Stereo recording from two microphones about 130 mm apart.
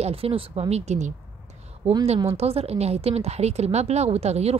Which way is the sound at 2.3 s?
50° right (ahead or behind).